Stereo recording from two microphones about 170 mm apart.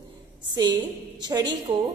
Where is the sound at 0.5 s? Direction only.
25° right (ahead or behind).